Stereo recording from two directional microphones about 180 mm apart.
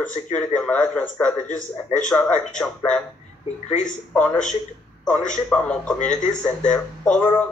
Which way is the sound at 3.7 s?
45° left (ahead or behind).